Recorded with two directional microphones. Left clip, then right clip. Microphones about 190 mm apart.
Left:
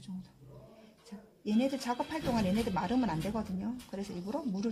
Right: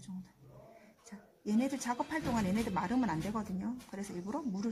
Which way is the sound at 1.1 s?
20° left (ahead or behind).